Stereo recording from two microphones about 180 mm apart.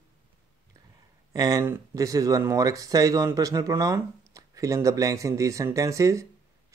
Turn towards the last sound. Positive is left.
turn(degrees=-15)  # may be behind; listen again after turning